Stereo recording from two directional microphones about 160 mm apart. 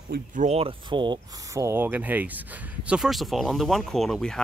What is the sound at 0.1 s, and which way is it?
Speech, 50° right (ahead or behind).